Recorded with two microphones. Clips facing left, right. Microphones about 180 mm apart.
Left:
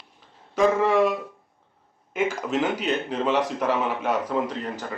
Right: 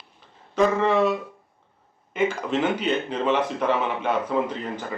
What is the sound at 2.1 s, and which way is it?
A man's voice, 5° left (ahead or behind).